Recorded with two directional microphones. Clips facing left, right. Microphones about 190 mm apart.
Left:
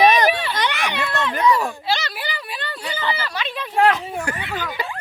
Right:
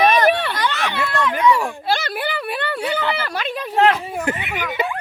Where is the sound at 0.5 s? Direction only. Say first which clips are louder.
Right 1 dB; 15° left (ahead or behind).